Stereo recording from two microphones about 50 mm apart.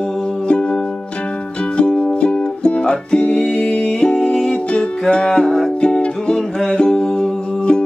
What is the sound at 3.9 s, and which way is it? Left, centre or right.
Humming, left.